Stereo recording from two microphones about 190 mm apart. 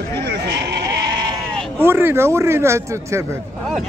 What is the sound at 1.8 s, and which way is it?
A man's voice, 10° right (ahead or behind).